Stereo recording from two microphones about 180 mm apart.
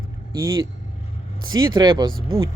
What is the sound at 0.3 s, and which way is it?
Speech, 15° right (ahead or behind).